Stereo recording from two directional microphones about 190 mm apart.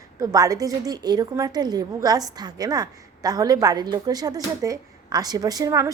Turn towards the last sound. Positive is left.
turn(degrees=-15)  # may be behind; listen again after turning